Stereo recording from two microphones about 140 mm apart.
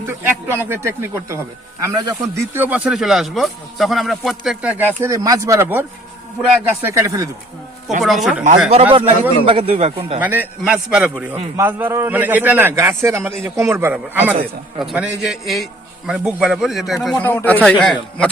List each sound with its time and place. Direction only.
0.0 s a man's voice: 15° right (ahead or behind); by 4.7 s centre (ahead or behind)
4.9 s speech: 20° right (ahead or behind)
8.0 s speech: centre (ahead or behind)
8.7 s a man's voice: 40° right (ahead or behind)
10.2 s a man's voice: 15° right (ahead or behind)
17.2 s a man's voice: 10° left (ahead or behind)